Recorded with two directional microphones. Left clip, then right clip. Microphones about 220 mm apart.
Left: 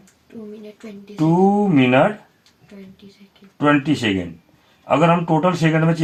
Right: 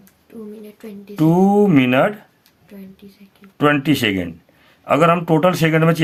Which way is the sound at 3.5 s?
35° right (ahead or behind).